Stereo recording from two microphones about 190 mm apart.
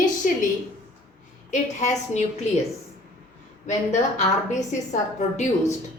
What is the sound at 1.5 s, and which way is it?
Speech, 40° left (ahead or behind).